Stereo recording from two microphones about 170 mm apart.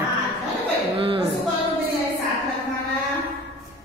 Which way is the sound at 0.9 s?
30° right (ahead or behind).